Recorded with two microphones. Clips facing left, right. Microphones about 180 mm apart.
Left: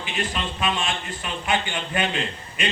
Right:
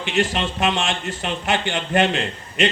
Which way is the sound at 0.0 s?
85° right.